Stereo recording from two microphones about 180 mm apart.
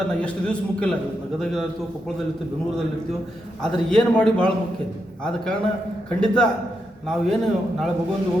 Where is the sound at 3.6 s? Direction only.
5° left (ahead or behind).